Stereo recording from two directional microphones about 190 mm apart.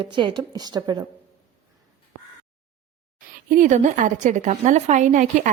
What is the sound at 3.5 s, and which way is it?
A woman's voice, 40° right (ahead or behind).